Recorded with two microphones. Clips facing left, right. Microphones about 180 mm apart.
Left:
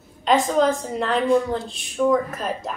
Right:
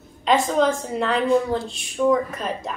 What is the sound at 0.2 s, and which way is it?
A woman's voice, centre (ahead or behind).